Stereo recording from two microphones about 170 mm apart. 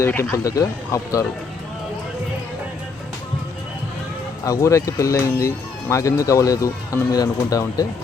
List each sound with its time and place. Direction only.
0.0 s speech: 15° left (ahead or behind)
4.4 s speech: 20° left (ahead or behind)